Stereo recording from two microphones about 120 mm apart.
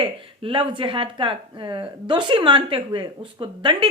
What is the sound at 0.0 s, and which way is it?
Speech, 45° right (ahead or behind).